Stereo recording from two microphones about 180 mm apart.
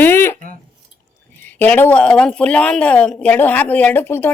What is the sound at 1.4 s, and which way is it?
A woman's voice, 10° left (ahead or behind).